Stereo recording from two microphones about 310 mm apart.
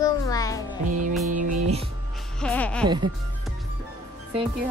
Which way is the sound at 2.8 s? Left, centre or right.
Centre.